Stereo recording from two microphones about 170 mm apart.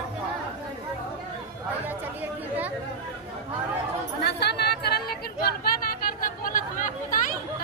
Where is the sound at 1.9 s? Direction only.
10° right (ahead or behind).